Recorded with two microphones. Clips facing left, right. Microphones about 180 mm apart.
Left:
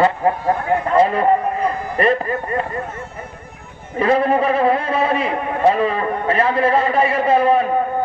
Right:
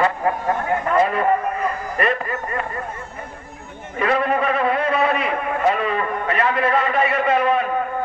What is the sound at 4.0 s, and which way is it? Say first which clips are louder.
A man's voice: left 4 dB; 30° left (ahead or behind).